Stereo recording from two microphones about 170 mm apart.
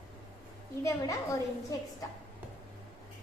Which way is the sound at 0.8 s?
20° left (ahead or behind).